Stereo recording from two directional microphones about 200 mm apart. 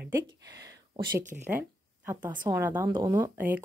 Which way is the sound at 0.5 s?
20° right (ahead or behind).